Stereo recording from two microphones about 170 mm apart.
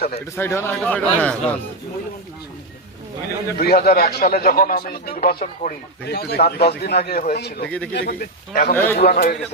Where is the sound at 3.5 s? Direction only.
65° left (ahead or behind); by 5.7 s 50° left (ahead or behind).